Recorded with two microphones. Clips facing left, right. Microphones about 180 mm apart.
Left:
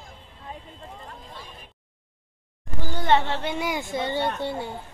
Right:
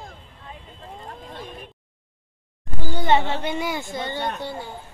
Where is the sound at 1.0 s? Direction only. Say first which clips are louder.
Right 5 dB; 55° right (ahead or behind).